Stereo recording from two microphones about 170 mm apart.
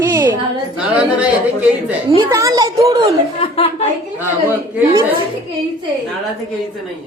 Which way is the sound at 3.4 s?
35° left (ahead or behind).